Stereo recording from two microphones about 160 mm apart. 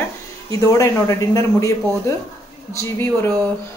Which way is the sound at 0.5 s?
20° left (ahead or behind).